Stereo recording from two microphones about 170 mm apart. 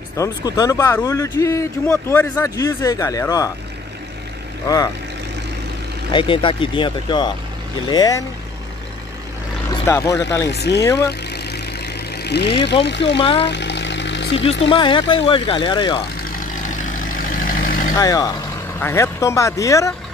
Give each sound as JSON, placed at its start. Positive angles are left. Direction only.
{"t": 0.2, "sound": "speech", "side_deg": 20}
{"t": 4.6, "sound": "speech", "side_deg": 20}
{"t": 6.1, "sound": "speech", "side_deg": 30}
{"t": 9.8, "sound": "speech", "side_deg": 15}
{"t": 10.5, "sound": "speech", "side_deg": 80}
{"t": 11.1, "sound": "vehicle", "side_deg": 75}
{"t": 12.8, "sound": "speech", "side_deg": 90}
{"t": 13.2, "sound": "speech", "side_deg": 30}
{"t": 13.5, "sound": "vehicle", "side_deg": 90}
{"t": 14.7, "sound": "speech", "side_deg": 30}
{"t": 16.2, "sound": "vehicle", "side_deg": 55}
{"t": 17.9, "sound": "speech", "side_deg": 20}